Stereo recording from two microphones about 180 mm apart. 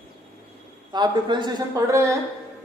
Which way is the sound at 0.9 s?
25° right (ahead or behind).